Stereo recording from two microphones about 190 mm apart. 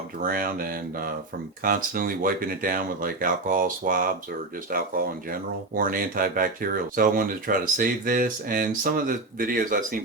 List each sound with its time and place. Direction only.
0.2 s speech: 50° right (ahead or behind)